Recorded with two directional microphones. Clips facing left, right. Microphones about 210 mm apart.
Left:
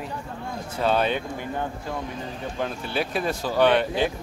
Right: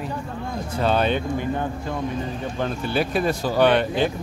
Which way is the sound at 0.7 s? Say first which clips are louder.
Right 2 dB; 5° left (ahead or behind).